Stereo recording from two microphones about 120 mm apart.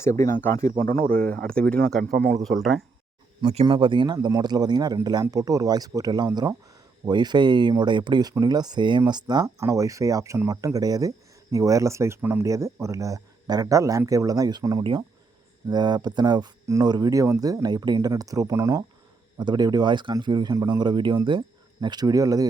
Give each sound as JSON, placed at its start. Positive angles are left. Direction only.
{"t": 0.0, "sound": "speech", "side_deg": 25}
{"t": 1.5, "sound": "speech", "side_deg": 10}
{"t": 3.4, "sound": "speech", "side_deg": -60}
{"t": 3.7, "sound": "speech", "side_deg": -45}
{"t": 9.6, "sound": "speech", "side_deg": -25}
{"t": 19.4, "sound": "speech", "side_deg": -35}